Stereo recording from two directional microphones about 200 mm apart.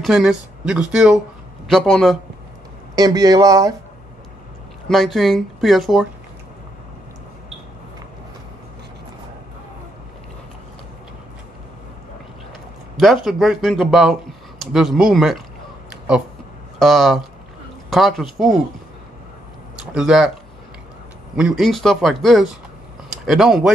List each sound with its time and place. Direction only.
0.0 s speech: 5° right (ahead or behind)
3.0 s speech: 20° right (ahead or behind)
4.8 s speech: centre (ahead or behind)
12.9 s speech: centre (ahead or behind)
16.7 s speech: centre (ahead or behind)
19.8 s speech: 5° right (ahead or behind)
21.4 s speech: centre (ahead or behind)